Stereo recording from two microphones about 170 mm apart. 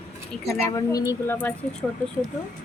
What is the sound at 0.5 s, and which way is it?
Speech, 20° left (ahead or behind).